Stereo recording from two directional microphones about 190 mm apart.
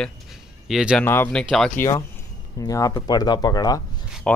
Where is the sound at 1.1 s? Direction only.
10° left (ahead or behind).